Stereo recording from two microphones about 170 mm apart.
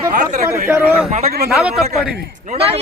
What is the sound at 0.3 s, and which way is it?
Speech, 45° right (ahead or behind).